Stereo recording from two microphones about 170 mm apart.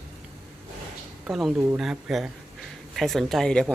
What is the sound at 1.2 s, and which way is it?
Speech, centre (ahead or behind).